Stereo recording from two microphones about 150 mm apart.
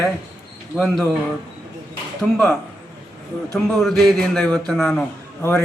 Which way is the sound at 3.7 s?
Centre (ahead or behind).